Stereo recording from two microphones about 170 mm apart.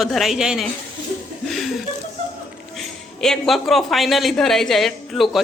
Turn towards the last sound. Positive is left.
turn(degrees=0)  # may be behind; listen again after turning